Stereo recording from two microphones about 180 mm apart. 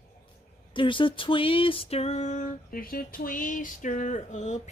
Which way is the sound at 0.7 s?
30° left (ahead or behind).